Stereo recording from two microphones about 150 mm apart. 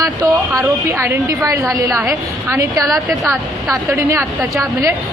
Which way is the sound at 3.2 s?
Centre (ahead or behind).